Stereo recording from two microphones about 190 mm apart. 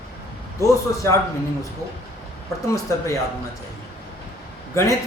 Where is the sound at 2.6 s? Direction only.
15° left (ahead or behind).